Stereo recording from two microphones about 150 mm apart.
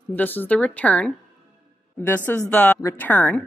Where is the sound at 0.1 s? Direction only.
10° left (ahead or behind).